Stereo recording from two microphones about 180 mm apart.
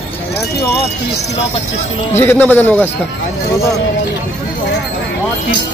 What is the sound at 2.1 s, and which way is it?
Speech, 10° left (ahead or behind).